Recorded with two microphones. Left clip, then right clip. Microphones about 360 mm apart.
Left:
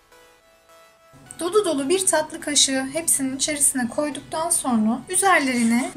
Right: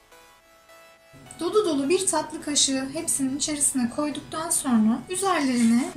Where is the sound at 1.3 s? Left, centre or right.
Left.